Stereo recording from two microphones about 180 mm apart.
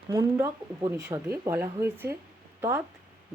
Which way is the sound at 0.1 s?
20° right (ahead or behind).